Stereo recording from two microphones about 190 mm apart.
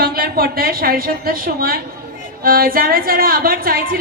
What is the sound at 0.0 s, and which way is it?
A woman's voice, 50° right (ahead or behind).